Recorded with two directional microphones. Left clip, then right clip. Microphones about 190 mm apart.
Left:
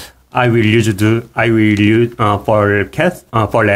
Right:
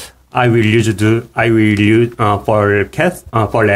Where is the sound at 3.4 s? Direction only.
15° left (ahead or behind).